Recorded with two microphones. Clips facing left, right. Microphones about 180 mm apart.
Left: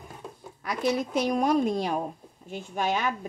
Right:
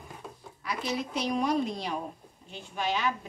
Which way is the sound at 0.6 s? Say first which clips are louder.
Left 6 dB; 50° left (ahead or behind).